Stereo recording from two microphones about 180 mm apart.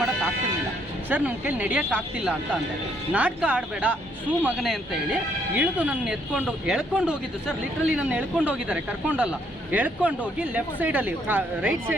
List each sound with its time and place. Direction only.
1.1 s speech: 10° right (ahead or behind)